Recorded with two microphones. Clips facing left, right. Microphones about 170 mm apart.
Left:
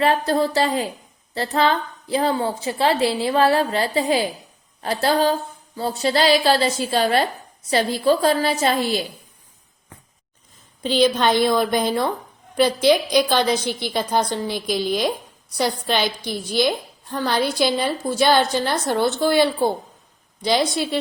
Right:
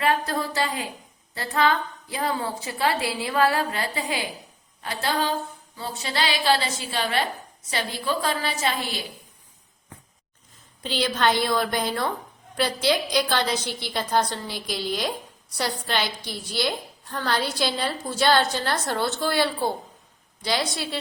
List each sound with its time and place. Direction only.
0.0 s a woman's voice: 30° left (ahead or behind)
10.8 s a woman's voice: 20° left (ahead or behind)